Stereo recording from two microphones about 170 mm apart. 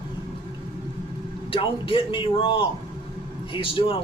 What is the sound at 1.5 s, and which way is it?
A man's voice, 30° left (ahead or behind).